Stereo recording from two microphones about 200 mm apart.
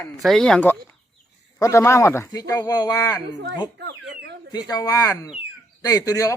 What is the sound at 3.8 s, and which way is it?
Speech, 60° right (ahead or behind).